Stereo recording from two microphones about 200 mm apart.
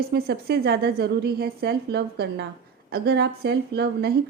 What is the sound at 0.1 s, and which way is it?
Speech, 50° right (ahead or behind).